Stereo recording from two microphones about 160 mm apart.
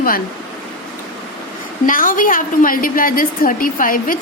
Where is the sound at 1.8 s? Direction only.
60° left (ahead or behind).